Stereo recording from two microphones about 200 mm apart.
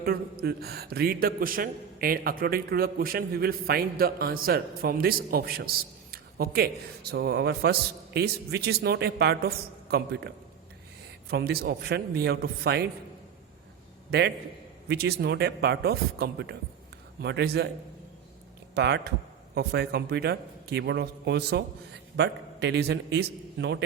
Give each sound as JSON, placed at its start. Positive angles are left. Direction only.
{"t": 0.0, "sound": "a man's voice", "side_deg": -50}
{"t": 14.1, "sound": "a man's voice", "side_deg": -60}
{"t": 18.7, "sound": "a man's voice", "side_deg": -60}